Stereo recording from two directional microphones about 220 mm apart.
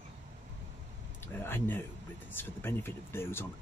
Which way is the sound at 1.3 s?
10° left (ahead or behind).